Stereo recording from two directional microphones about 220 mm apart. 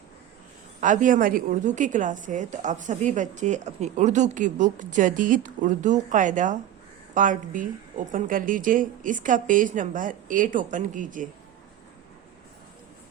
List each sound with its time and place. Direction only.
0.8 s a woman's voice: 35° right (ahead or behind)